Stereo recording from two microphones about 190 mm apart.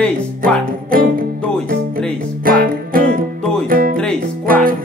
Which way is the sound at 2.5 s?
50° right (ahead or behind).